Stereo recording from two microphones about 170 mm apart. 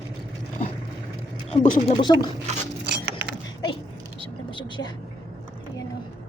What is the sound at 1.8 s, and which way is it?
Speech, 25° left (ahead or behind).